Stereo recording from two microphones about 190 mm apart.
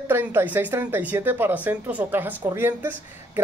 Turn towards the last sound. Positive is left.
turn(degrees=-10)  # may be behind; listen again after turning